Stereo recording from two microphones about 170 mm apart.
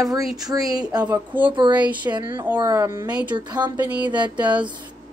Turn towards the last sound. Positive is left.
turn(degrees=-25)  # may be behind; listen again after turning